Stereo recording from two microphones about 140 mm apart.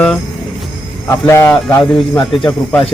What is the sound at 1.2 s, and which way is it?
Speech, 20° left (ahead or behind).